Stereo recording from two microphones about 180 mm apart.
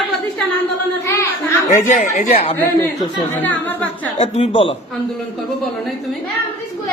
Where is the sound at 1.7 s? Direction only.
45° left (ahead or behind).